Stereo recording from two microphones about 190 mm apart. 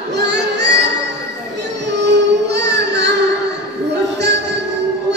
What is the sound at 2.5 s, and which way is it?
Child singing, 65° right (ahead or behind).